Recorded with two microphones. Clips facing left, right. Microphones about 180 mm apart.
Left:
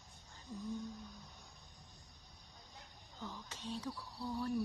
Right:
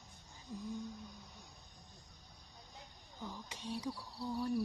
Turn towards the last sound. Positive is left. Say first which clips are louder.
# right 1 dB
turn(degrees=-10)  # may be behind; listen again after turning